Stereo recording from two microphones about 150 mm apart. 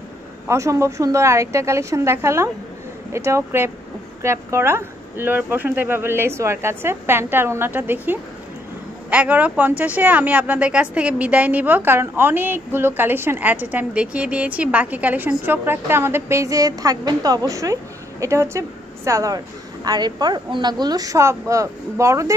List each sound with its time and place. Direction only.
0.5 s a woman's voice: 20° right (ahead or behind)